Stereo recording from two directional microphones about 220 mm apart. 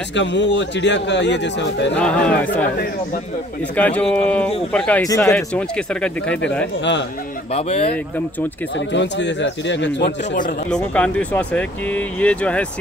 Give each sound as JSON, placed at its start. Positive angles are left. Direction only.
{"t": 0.1, "sound": "speech", "side_deg": 55}
{"t": 2.0, "sound": "speech", "side_deg": 5}
{"t": 3.7, "sound": "speech", "side_deg": 5}
{"t": 6.8, "sound": "speech", "side_deg": 55}
{"t": 7.5, "sound": "speech", "side_deg": 30}
{"t": 8.7, "sound": "a man's voice", "side_deg": 55}
{"t": 10.0, "sound": "a man's voice", "side_deg": 35}
{"t": 10.7, "sound": "speech", "side_deg": 5}